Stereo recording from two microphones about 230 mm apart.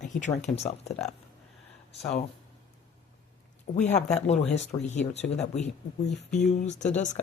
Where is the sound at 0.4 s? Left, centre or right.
Left.